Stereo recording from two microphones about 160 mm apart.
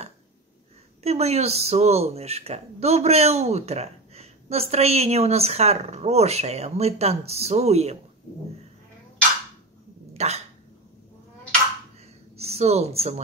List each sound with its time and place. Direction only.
1.0 s a woman's voice: 40° right (ahead or behind)
10.1 s speech: 40° right (ahead or behind)
12.4 s speech: 40° right (ahead or behind)